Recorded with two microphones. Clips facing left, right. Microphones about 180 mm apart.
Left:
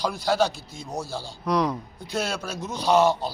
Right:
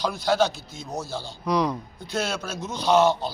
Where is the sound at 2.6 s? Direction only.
35° left (ahead or behind).